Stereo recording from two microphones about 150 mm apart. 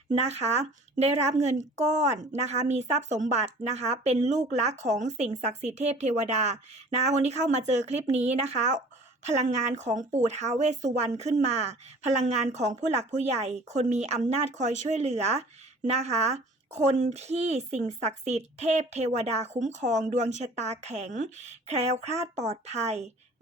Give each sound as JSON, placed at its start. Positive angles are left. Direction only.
{"t": 0.2, "sound": "speech", "side_deg": -45}